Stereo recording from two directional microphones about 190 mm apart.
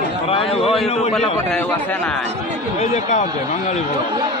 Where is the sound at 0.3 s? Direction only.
30° left (ahead or behind).